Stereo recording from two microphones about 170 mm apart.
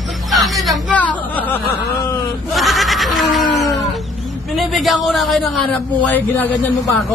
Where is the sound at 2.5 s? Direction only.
Centre (ahead or behind).